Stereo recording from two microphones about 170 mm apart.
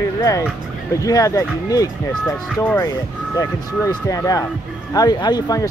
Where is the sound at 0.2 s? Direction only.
20° left (ahead or behind).